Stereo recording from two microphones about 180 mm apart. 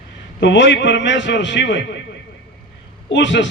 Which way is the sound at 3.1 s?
85° left.